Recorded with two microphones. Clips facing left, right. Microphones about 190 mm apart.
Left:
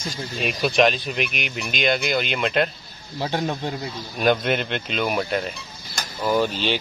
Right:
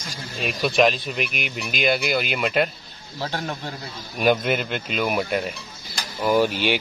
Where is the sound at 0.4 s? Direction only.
Centre (ahead or behind).